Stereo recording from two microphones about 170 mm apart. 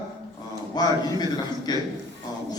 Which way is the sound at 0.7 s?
25° left (ahead or behind).